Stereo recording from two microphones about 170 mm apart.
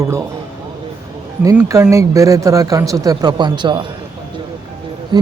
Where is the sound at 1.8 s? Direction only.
15° right (ahead or behind).